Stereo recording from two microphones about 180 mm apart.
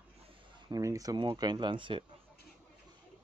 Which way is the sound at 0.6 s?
20° right (ahead or behind).